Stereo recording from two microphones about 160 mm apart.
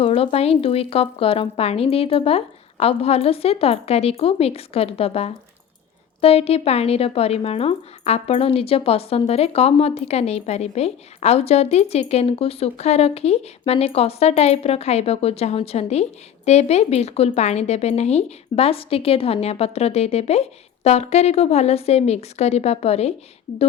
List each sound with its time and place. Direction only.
0.0 s speech: 40° left (ahead or behind)